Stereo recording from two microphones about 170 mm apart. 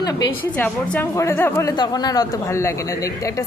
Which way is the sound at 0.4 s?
10° left (ahead or behind).